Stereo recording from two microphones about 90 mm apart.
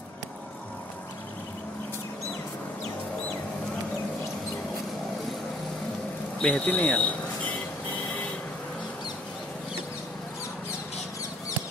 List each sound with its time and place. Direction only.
6.4 s speech: 10° left (ahead or behind)